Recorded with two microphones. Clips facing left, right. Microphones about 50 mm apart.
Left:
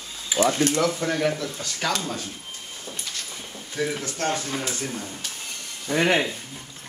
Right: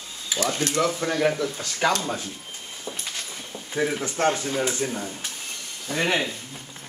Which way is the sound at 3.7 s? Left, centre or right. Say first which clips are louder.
Right 2 dB; centre.